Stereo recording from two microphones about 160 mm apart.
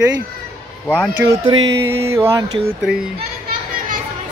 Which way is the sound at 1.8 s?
15° right (ahead or behind).